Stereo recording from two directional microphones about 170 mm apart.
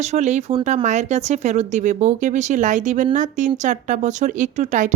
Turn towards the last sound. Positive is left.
turn(degrees=-45)  # may be behind; listen again after turning